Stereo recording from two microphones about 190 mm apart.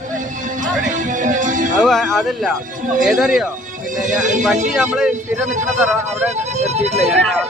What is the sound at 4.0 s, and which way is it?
Speech, 40° right (ahead or behind).